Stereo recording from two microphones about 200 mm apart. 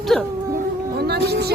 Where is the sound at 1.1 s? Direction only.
55° right (ahead or behind).